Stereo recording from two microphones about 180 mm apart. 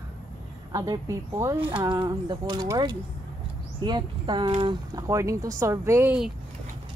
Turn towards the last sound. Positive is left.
turn(degrees=-10)  # may be behind; listen again after turning